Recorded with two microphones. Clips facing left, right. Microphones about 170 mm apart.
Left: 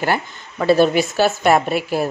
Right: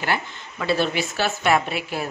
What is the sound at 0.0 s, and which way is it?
Speech, 45° left (ahead or behind).